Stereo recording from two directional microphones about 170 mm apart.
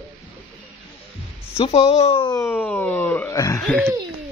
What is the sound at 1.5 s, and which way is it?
Speech, 35° left (ahead or behind).